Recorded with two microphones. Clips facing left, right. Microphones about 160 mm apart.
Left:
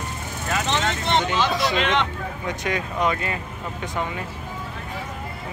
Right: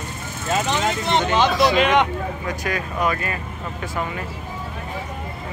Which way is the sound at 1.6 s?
15° right (ahead or behind).